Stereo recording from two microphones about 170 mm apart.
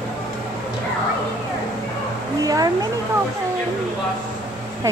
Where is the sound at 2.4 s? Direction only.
20° right (ahead or behind).